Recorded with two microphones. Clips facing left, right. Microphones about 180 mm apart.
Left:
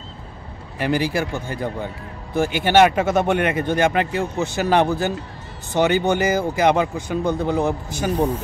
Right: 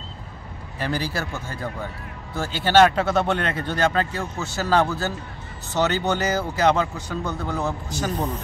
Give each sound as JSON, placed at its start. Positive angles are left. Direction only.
{"t": 0.7, "sound": "a man's voice", "side_deg": 15}